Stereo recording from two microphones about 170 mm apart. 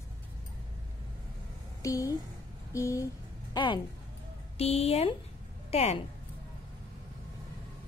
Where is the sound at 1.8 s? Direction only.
20° left (ahead or behind).